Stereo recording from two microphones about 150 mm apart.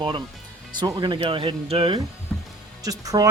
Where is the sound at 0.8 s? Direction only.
30° right (ahead or behind).